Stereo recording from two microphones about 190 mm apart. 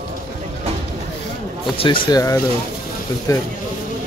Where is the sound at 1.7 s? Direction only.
25° left (ahead or behind).